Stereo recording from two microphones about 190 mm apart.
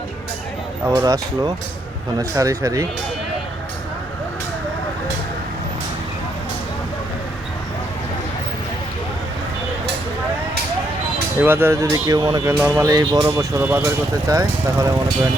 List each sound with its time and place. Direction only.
0.9 s speech: 15° right (ahead or behind)
11.4 s speech: 15° right (ahead or behind)